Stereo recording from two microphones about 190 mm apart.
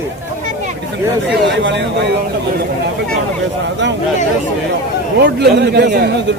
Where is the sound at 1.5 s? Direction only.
70° right (ahead or behind).